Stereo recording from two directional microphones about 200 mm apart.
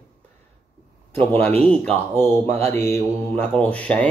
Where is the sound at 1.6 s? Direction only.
5° left (ahead or behind).